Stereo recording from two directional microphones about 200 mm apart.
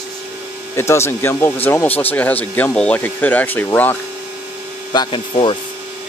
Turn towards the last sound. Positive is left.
turn(degrees=25)  # may be behind; listen again after turning